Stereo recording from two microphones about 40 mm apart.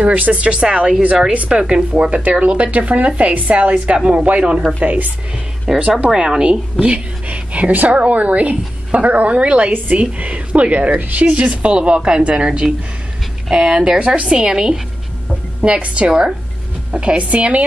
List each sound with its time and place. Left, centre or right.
0.0 s speech: right
1.3 s speech: right
1.6 s speech: right
5.8 s speech: right
6.1 s speech: centre
15.8 s speech: right